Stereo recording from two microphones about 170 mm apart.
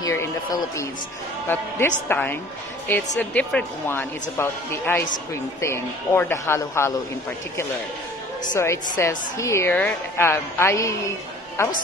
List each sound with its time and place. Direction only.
0.0 s a woman's voice: 20° left (ahead or behind)
8.5 s a woman's voice: 15° left (ahead or behind)